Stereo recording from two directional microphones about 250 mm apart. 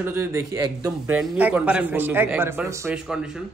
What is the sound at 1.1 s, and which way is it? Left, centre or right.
A man's voice, centre.